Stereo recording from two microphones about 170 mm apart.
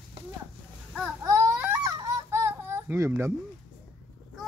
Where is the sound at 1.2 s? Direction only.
15° right (ahead or behind).